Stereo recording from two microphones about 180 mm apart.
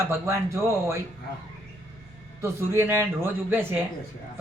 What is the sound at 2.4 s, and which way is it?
Speech, 15° right (ahead or behind).